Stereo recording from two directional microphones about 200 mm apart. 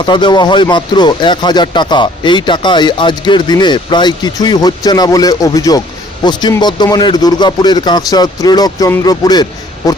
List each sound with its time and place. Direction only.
0.0 s speech: 25° left (ahead or behind)